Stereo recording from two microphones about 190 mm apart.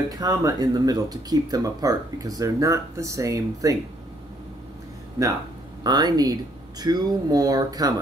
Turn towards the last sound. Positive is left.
turn(degrees=-20)  # may be behind; listen again after turning